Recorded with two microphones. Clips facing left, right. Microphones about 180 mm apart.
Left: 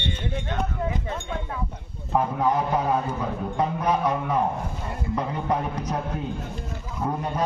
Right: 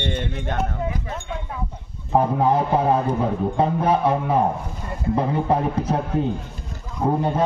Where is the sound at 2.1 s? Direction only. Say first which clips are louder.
Right 4 dB; 30° right (ahead or behind).